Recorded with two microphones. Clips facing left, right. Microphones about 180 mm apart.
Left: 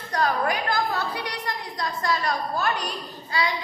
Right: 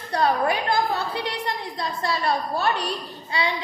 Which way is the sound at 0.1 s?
30° right (ahead or behind).